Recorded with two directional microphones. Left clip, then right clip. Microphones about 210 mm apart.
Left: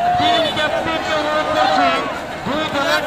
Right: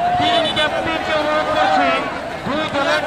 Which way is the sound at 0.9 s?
15° right (ahead or behind).